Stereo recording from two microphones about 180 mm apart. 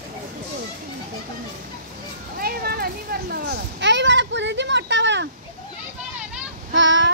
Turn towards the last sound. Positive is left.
turn(degrees=-90)